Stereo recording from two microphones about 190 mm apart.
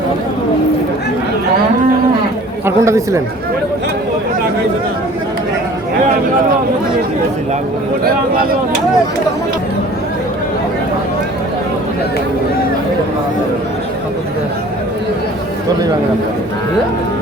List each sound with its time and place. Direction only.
2.6 s speech: 15° right (ahead or behind)